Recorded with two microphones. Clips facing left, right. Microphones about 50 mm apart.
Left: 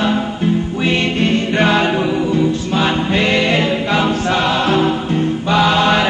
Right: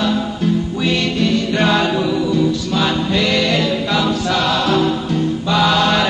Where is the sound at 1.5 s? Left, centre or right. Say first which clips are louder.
Left 2 dB; left.